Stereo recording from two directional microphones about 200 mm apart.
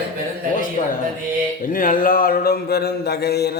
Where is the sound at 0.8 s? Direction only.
35° left (ahead or behind).